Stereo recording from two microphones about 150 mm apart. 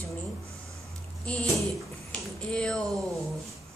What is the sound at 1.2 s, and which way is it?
A woman's voice, 10° left (ahead or behind).